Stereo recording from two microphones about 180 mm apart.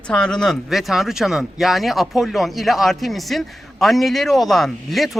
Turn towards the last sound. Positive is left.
turn(degrees=0)  # may be behind; listen again after turning